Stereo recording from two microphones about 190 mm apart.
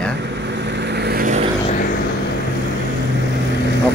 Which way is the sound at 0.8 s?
60° right (ahead or behind).